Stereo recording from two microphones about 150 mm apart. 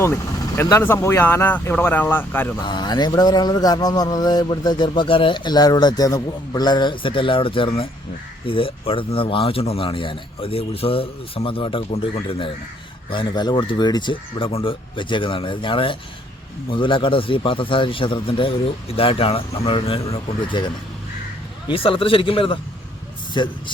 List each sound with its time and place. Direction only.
0.5 s speech: 15° left (ahead or behind)
2.6 s a sound: 30° left (ahead or behind)
8.4 s a man's voice: 35° left (ahead or behind)
21.7 s a man's voice: 35° left (ahead or behind)